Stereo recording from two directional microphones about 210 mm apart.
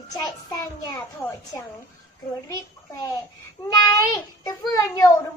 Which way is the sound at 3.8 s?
20° left (ahead or behind).